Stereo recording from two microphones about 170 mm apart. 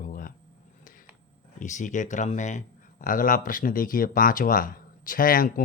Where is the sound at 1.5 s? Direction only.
45° left (ahead or behind).